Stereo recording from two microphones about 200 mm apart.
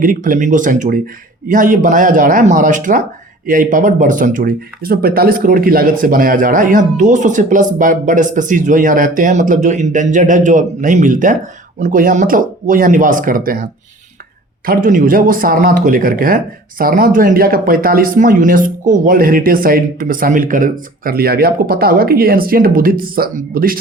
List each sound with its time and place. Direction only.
0.0 s speech: 40° right (ahead or behind)
14.7 s speech: 40° right (ahead or behind)